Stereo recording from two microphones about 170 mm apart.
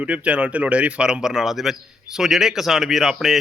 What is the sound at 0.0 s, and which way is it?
A man's voice, 5° right (ahead or behind).